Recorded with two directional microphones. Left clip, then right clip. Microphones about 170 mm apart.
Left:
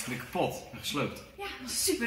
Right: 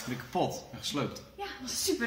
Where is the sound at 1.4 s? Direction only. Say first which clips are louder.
Even; centre (ahead or behind).